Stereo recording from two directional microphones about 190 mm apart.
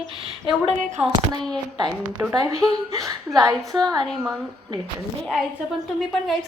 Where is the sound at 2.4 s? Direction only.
20° right (ahead or behind).